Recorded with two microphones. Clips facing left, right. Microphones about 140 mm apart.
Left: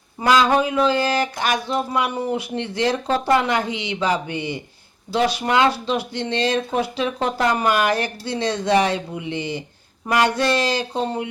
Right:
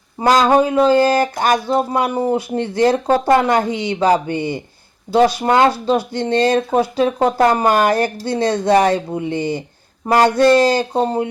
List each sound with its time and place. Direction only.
0.2 s speech: 40° right (ahead or behind)